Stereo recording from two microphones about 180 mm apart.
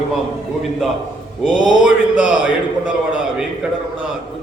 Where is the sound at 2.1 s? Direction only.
5° right (ahead or behind).